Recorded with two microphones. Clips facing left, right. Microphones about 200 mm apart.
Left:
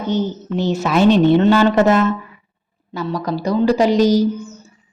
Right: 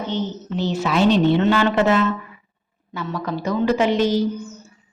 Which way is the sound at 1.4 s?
40° left (ahead or behind).